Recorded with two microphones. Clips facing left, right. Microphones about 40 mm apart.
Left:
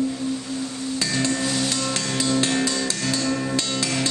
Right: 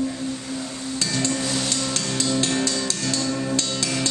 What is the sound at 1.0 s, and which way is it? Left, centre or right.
Music, centre.